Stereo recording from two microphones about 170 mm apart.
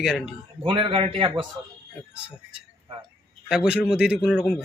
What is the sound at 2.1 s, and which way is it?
A man's voice, 5° right (ahead or behind).